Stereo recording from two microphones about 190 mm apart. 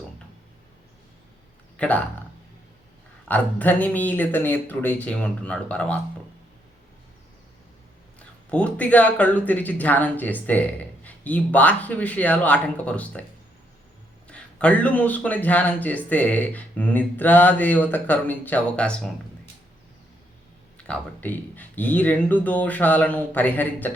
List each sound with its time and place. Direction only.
1.7 s speech: 5° left (ahead or behind)
3.2 s a man's voice: 10° left (ahead or behind)
8.4 s a man's voice: 5° left (ahead or behind)
14.3 s a man's voice: 5° left (ahead or behind)
20.7 s a man's voice: 5° left (ahead or behind)